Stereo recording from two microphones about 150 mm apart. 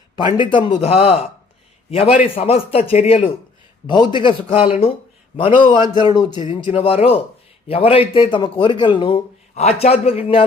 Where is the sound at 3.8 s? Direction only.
30° left (ahead or behind).